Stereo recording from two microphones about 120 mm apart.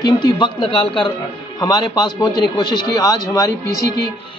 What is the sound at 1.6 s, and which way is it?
A man's voice, 35° left (ahead or behind).